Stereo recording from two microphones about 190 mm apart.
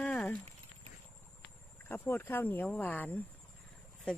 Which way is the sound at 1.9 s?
10° left (ahead or behind).